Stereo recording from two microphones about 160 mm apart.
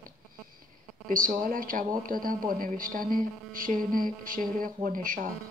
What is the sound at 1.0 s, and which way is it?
A man's voice, 60° right (ahead or behind).